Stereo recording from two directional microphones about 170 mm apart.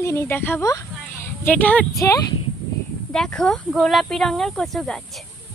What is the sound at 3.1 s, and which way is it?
Speech, 5° left (ahead or behind).